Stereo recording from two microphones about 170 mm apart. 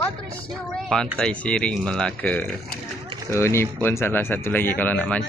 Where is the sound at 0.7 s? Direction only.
5° left (ahead or behind).